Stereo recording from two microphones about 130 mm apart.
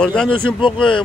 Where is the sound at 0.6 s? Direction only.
40° left (ahead or behind).